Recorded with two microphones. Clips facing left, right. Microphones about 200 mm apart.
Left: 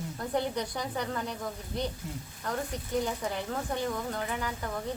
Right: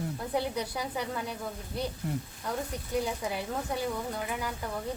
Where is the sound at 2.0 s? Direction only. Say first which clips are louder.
Right 6 dB; 60° right (ahead or behind).